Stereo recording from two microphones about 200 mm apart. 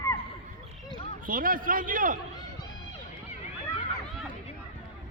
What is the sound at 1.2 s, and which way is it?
Speech, 45° right (ahead or behind).